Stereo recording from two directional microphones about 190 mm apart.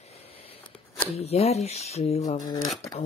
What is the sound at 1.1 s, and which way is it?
Speech, 35° left (ahead or behind).